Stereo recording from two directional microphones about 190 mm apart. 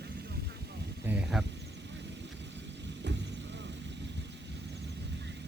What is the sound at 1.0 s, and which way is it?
Speech, 10° right (ahead or behind).